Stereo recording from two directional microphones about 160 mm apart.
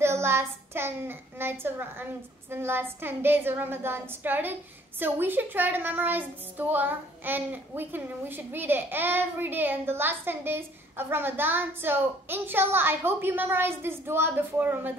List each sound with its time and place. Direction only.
0.0 s a woman's voice: 15° right (ahead or behind)